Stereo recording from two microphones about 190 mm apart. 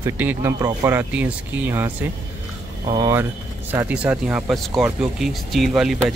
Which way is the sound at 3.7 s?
10° right (ahead or behind).